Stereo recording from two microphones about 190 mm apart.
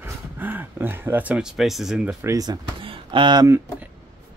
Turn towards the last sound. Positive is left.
turn(degrees=-20)  # may be behind; listen again after turning